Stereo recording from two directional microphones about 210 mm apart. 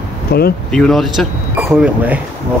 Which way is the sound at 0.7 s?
Centre (ahead or behind).